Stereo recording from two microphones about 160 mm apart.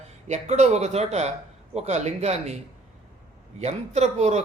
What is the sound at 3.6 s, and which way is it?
Speech, 45° right (ahead or behind).